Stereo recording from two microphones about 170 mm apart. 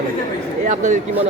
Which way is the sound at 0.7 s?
45° right (ahead or behind).